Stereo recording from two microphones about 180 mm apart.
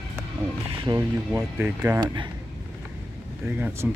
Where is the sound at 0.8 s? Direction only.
20° right (ahead or behind).